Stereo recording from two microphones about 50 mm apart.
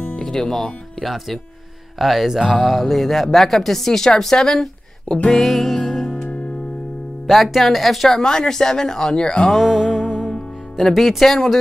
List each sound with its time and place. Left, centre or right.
0.2 s speech: centre
5.3 s music: centre
7.2 s speech: centre
8.2 s speech: centre
9.5 s music: centre
10.8 s speech: centre